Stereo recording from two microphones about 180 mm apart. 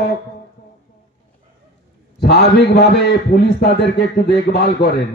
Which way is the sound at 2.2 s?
65° left (ahead or behind).